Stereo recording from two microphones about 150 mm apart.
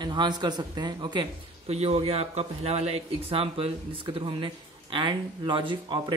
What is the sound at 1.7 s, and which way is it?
Speech, 45° right (ahead or behind).